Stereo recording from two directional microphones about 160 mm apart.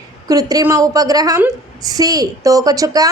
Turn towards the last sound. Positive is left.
turn(degrees=-20)  # may be behind; listen again after turning